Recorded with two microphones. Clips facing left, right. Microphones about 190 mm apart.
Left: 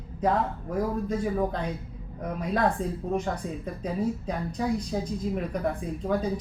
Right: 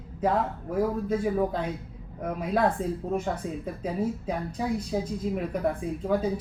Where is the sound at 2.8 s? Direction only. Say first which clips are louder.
Even; 5° right (ahead or behind).